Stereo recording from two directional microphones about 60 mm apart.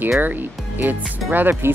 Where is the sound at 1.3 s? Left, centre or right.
Right.